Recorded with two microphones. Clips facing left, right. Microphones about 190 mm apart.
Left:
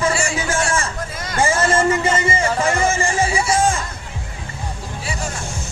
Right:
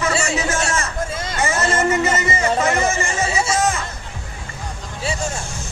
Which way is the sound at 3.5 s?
30° left (ahead or behind).